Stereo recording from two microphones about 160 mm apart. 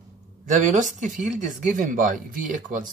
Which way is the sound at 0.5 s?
50° right (ahead or behind).